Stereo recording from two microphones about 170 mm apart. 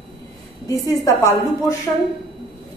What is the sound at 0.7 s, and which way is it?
Speech, 20° left (ahead or behind).